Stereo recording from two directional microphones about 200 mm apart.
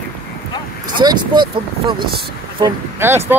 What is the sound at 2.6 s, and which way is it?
Speech, 10° right (ahead or behind).